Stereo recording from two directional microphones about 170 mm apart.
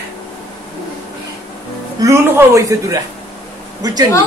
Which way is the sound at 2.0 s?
15° right (ahead or behind).